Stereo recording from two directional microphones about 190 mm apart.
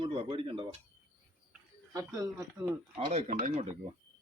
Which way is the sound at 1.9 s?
20° right (ahead or behind).